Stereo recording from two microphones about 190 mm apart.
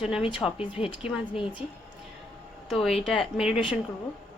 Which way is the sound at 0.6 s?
30° left (ahead or behind).